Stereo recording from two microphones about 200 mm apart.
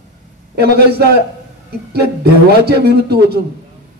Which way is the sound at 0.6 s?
55° right (ahead or behind).